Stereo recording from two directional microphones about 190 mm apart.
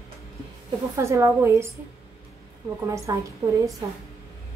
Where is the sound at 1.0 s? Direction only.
15° right (ahead or behind).